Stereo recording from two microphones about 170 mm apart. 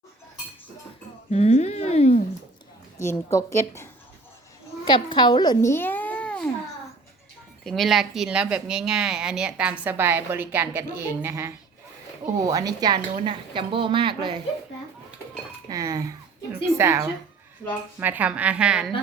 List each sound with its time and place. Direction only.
1.3 s speech: 40° left (ahead or behind)
3.0 s a woman's voice: 15° left (ahead or behind)
4.9 s a woman's voice: 30° left (ahead or behind)
5.7 s a sound: 10° left (ahead or behind)
7.6 s a woman's voice: centre (ahead or behind); by 14.4 s 30° right (ahead or behind)
15.7 s a woman's voice: 20° right (ahead or behind); by 18.9 s 5° right (ahead or behind)